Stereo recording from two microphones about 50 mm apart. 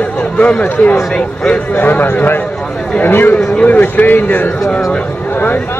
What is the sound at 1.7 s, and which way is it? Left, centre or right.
Speech, left.